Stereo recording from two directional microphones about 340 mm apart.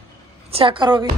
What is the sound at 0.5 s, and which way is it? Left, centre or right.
Speech, centre.